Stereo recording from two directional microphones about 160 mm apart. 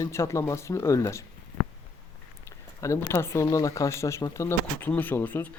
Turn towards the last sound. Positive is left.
turn(degrees=10)  # may be behind; listen again after turning